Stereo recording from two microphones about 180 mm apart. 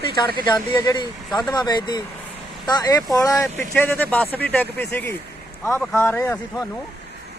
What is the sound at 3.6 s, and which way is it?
Speech, 10° left (ahead or behind).